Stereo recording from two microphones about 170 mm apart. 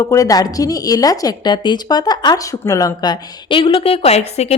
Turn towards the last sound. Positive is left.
turn(degrees=40)  # may be behind; listen again after turning